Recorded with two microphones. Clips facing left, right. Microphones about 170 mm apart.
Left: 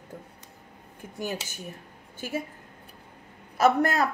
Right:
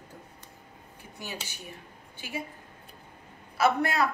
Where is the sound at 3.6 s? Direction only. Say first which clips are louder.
Left 3 dB; 45° left (ahead or behind).